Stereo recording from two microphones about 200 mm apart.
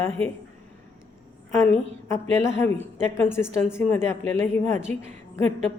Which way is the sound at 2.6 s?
10° left (ahead or behind).